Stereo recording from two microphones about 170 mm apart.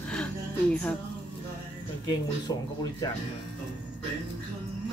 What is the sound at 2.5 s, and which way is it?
Speech, 25° left (ahead or behind).